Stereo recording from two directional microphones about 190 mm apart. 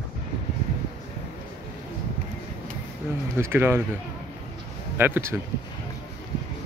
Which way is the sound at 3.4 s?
10° right (ahead or behind).